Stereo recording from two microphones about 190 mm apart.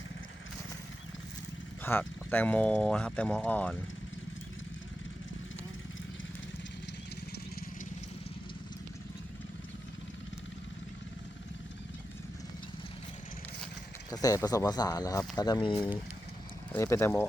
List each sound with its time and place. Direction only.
1.8 s speech: 10° left (ahead or behind)
14.1 s speech: 20° left (ahead or behind)
16.7 s speech: 15° left (ahead or behind)